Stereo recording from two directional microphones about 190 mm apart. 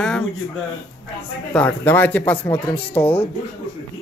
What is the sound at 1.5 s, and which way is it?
Speech, 5° left (ahead or behind).